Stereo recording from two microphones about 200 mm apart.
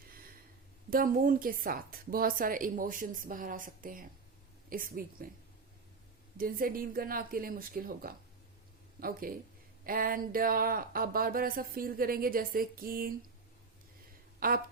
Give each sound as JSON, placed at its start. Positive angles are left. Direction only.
{"t": 0.9, "sound": "speech", "side_deg": -45}
{"t": 6.3, "sound": "speech", "side_deg": -45}
{"t": 14.3, "sound": "speech", "side_deg": -45}